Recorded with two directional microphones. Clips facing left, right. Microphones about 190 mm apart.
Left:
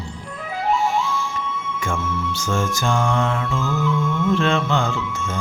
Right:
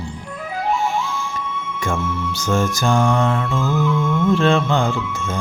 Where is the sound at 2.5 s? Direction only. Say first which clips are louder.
Right 4 dB; 40° right (ahead or behind).